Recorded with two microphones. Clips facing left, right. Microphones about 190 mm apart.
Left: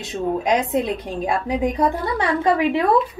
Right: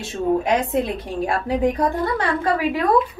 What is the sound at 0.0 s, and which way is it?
A woman's voice, 15° left (ahead or behind).